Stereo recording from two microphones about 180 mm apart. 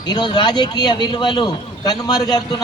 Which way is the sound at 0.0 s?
25° left (ahead or behind).